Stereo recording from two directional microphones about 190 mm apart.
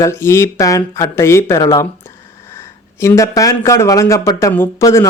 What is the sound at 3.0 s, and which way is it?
Speech, 15° left (ahead or behind).